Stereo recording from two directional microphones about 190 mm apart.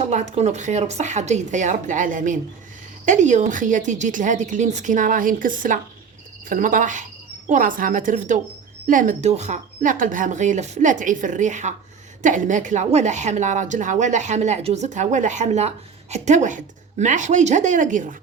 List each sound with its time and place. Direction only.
0.1 s a woman's voice: 35° right (ahead or behind)